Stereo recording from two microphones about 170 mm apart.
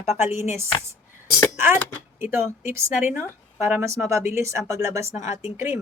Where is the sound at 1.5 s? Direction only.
15° right (ahead or behind).